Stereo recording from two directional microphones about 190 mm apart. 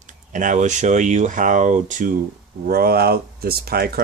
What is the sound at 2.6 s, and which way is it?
Speech, 55° right (ahead or behind).